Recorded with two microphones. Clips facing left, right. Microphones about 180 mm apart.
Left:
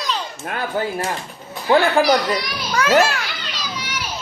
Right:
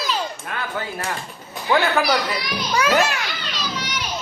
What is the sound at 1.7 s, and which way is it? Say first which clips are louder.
Speech: left 4 dB; 10° left (ahead or behind).